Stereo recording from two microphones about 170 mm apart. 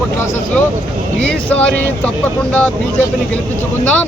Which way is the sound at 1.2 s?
10° left (ahead or behind).